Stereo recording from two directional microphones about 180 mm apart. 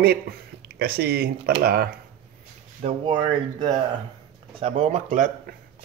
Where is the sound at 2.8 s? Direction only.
30° right (ahead or behind).